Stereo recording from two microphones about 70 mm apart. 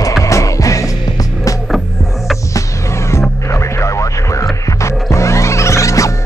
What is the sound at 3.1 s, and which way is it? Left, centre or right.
Music, left.